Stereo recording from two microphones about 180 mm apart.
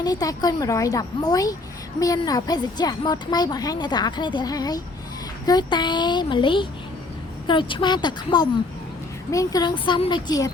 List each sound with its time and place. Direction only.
0.0 s a woman's voice: 20° left (ahead or behind)